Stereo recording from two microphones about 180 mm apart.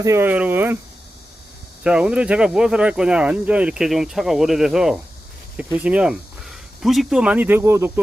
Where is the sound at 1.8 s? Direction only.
5° right (ahead or behind).